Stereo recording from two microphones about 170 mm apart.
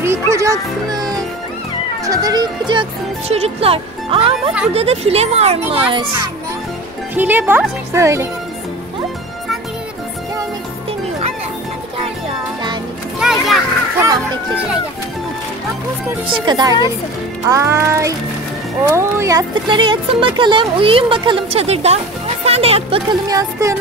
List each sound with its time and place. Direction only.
0.0 s speech: 15° right (ahead or behind)
7.2 s speech: 10° right (ahead or behind)
13.2 s children playing: centre (ahead or behind)
13.9 s music: 20° right (ahead or behind)
16.4 s speech: 25° right (ahead or behind)
23.2 s speech: 20° right (ahead or behind)